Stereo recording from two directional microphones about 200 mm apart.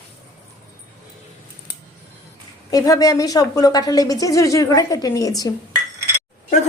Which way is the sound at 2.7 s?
20° left (ahead or behind).